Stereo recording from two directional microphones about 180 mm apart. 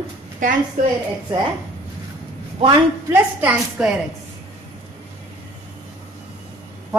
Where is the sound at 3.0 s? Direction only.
10° right (ahead or behind).